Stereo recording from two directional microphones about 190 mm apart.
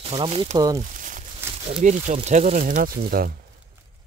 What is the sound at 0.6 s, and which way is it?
Speech, 20° right (ahead or behind).